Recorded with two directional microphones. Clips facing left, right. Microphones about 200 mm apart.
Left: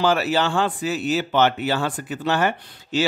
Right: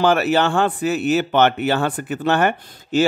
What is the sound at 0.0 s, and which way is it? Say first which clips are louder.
Speech: right 3 dB; 60° right (ahead or behind).